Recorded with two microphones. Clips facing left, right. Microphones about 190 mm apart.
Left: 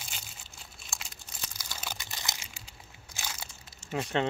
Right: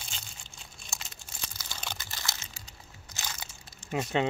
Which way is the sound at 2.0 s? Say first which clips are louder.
Even; 20° left (ahead or behind).